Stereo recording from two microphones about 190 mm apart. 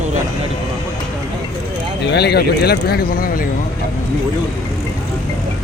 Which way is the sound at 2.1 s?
60° left (ahead or behind).